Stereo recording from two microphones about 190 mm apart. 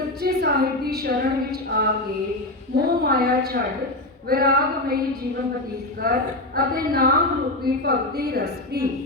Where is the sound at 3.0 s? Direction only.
50° right (ahead or behind).